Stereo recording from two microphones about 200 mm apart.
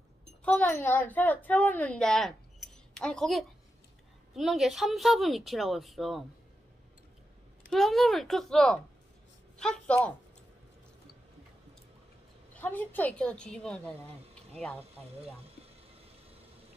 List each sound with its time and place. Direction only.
0.4 s a woman's voice: 5° left (ahead or behind)
7.7 s a woman's voice: centre (ahead or behind)
12.5 s a woman's voice: 10° left (ahead or behind)
15.4 s a sound: 30° right (ahead or behind)